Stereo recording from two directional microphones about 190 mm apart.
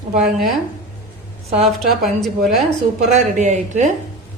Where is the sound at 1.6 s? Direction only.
Centre (ahead or behind).